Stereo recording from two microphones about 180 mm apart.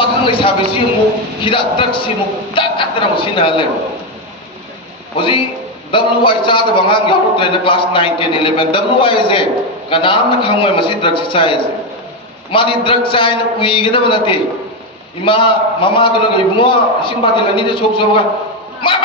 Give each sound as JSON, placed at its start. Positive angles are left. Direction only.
{"t": 0.0, "sound": "a sound", "side_deg": 30}
{"t": 1.4, "sound": "a man's voice", "side_deg": 30}
{"t": 5.1, "sound": "a man's voice", "side_deg": 30}